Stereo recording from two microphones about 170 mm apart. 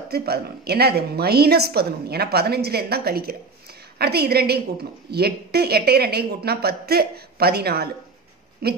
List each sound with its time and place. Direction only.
0.1 s a woman's voice: 70° right (ahead or behind)